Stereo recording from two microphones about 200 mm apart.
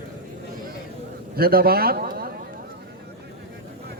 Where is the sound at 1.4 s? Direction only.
50° right (ahead or behind).